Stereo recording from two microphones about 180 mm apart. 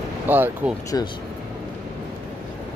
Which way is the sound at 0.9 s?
20° left (ahead or behind).